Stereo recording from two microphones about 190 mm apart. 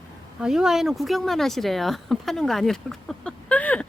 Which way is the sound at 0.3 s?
5° right (ahead or behind).